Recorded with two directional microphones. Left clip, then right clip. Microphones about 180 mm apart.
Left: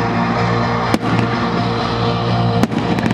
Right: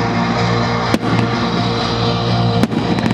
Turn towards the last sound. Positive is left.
turn(degrees=0)  # may be behind; listen again after turning